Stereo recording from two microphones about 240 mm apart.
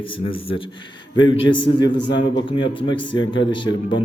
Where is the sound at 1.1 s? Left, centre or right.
Left.